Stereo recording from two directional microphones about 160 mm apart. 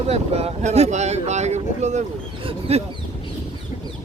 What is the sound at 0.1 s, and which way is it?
Speech, 40° right (ahead or behind).